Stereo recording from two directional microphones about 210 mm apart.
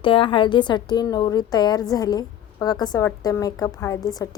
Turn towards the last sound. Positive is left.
turn(degrees=15)  # may be behind; listen again after turning